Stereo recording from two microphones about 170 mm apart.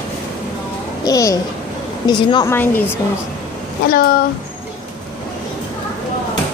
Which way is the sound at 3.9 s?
60° left (ahead or behind).